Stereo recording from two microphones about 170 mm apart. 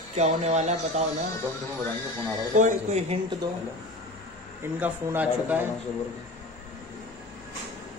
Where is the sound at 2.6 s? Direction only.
45° right (ahead or behind).